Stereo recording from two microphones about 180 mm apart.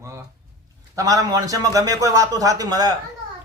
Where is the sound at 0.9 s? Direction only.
20° right (ahead or behind).